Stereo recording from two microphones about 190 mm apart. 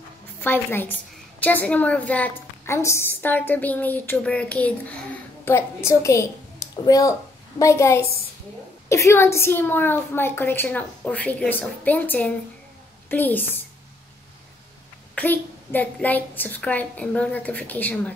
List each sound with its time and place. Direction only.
0.4 s a woman's voice: 10° left (ahead or behind)
15.1 s a woman's voice: 10° left (ahead or behind)